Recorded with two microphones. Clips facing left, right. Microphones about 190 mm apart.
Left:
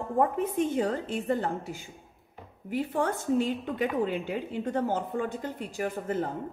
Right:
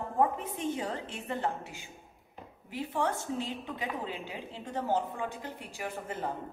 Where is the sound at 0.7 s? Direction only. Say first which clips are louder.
Left 7 dB; 45° left (ahead or behind).